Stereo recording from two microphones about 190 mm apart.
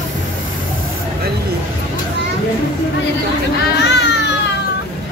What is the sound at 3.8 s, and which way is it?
Baby cry, 65° left (ahead or behind).